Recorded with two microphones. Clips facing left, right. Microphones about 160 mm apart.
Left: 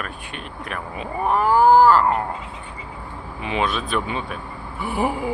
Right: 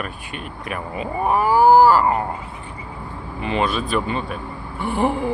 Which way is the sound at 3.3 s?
Centre (ahead or behind).